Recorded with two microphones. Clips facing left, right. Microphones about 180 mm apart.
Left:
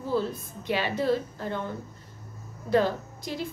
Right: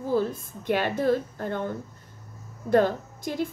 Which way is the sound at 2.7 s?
50° right (ahead or behind).